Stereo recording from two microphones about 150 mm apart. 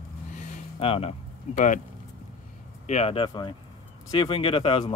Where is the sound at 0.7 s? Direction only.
40° left (ahead or behind); by 1.8 s 55° left (ahead or behind).